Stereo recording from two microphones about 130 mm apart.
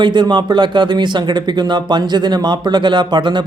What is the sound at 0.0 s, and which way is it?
Speech, 35° right (ahead or behind).